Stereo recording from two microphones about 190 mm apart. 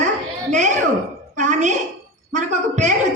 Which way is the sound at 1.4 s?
40° right (ahead or behind).